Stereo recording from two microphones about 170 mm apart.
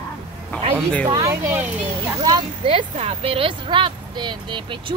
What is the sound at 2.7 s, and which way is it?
A woman's voice, 35° right (ahead or behind).